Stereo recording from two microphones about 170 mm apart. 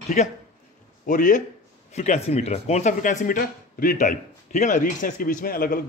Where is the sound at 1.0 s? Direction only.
50° left (ahead or behind).